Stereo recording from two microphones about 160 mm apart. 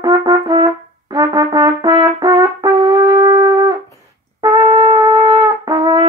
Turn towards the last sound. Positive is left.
turn(degrees=-25)  # may be behind; listen again after turning